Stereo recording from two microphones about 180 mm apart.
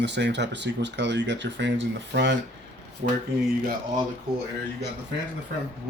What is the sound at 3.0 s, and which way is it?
Speech, 60° right (ahead or behind).